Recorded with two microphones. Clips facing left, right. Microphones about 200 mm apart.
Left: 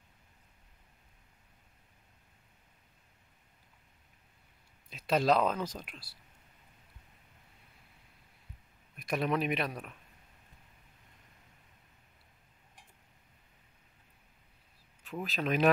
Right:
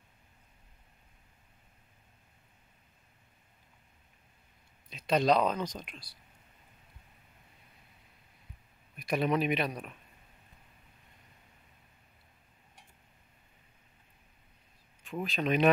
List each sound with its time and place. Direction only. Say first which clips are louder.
4.8 s speech: right 1 dB; 5° left (ahead or behind)
8.9 s speech: right 2 dB; centre (ahead or behind)
15.0 s speech: right 2 dB; centre (ahead or behind)